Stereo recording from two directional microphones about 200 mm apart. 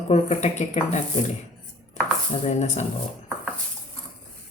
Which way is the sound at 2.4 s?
30° left (ahead or behind).